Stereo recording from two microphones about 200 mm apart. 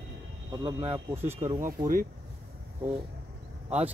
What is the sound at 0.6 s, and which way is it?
Speech, 25° right (ahead or behind).